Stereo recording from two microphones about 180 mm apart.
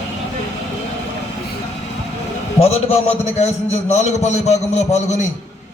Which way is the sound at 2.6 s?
35° left (ahead or behind).